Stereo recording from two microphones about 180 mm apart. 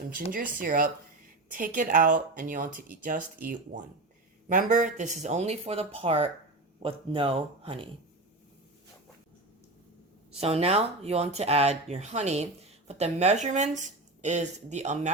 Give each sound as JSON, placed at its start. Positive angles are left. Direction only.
{"t": 0.6, "sound": "speech", "side_deg": -50}
{"t": 10.3, "sound": "speech", "side_deg": -35}